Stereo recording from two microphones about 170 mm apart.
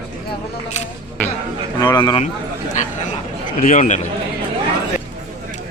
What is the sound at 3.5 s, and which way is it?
Speech, 50° left (ahead or behind).